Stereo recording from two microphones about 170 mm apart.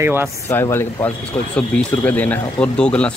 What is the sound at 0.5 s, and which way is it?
Speech, 15° left (ahead or behind).